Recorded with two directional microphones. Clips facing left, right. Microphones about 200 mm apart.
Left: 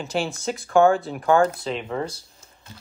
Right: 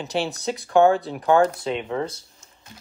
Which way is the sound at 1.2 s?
20° right (ahead or behind).